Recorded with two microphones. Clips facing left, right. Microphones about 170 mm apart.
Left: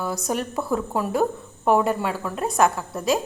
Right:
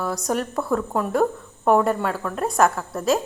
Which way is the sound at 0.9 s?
5° left (ahead or behind).